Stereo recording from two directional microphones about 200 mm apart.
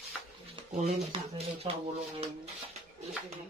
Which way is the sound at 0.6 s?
30° right (ahead or behind).